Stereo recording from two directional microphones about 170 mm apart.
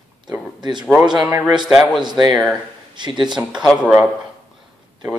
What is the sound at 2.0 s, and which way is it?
Speech, 25° right (ahead or behind).